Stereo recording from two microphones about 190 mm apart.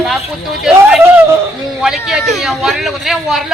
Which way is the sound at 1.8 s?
5° right (ahead or behind).